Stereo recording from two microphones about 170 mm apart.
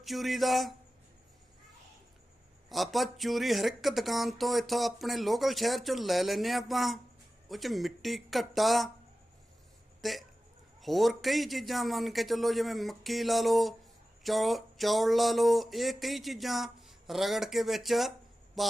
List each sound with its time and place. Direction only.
0.0 s speech: centre (ahead or behind)
2.6 s speech: centre (ahead or behind)
10.0 s speech: centre (ahead or behind)